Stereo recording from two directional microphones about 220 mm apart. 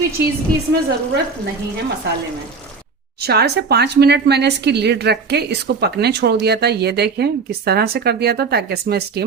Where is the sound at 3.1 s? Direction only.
45° right (ahead or behind).